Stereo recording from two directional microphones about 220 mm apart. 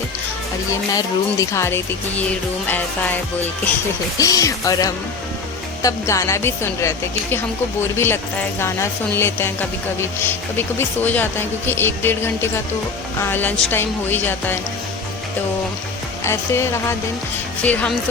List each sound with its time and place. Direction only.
0.7 s speech: 15° left (ahead or behind)
4.2 s speech: 15° left (ahead or behind)
16.2 s speech: 10° left (ahead or behind)